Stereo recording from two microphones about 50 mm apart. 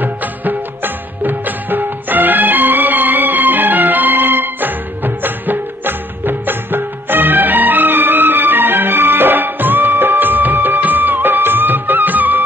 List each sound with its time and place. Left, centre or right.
0.0 s music: right